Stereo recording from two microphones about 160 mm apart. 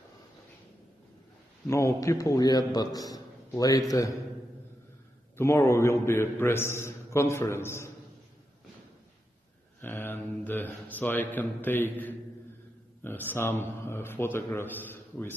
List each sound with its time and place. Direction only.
1.7 s a man's voice: 20° left (ahead or behind)
5.4 s a man's voice: 15° left (ahead or behind)
9.8 s a man's voice: 15° left (ahead or behind)